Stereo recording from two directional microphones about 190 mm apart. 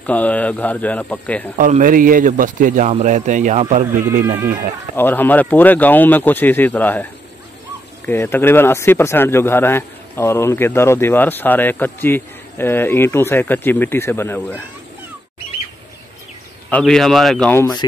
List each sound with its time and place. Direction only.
0.0 s speech: 10° left (ahead or behind)
1.6 s a man's voice: 45° right (ahead or behind)
4.9 s speech: 10° left (ahead or behind)
8.1 s speech: 10° left (ahead or behind)
16.7 s a man's voice: centre (ahead or behind)
17.5 s speech: 15° left (ahead or behind)